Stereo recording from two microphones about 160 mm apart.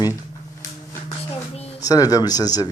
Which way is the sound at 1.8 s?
25° left (ahead or behind).